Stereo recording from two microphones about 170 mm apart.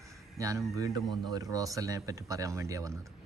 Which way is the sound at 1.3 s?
20° right (ahead or behind).